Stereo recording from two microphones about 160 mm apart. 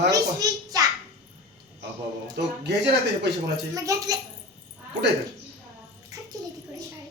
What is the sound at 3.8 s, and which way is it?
Speech, 20° right (ahead or behind).